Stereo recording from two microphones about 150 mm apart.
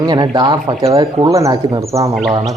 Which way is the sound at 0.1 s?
30° right (ahead or behind).